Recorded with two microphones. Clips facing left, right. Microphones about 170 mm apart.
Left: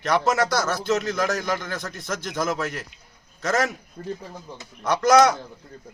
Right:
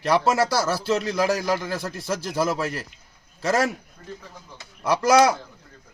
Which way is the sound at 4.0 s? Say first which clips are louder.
Left 8 dB; 40° left (ahead or behind).